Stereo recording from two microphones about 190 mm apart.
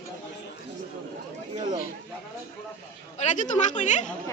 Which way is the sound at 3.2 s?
40° left (ahead or behind).